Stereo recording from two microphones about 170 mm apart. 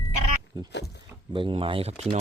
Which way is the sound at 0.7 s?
90° left.